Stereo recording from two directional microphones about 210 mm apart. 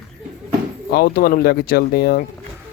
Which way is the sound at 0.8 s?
45° left (ahead or behind).